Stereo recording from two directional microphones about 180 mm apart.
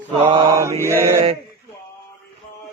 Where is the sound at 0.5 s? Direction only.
15° right (ahead or behind).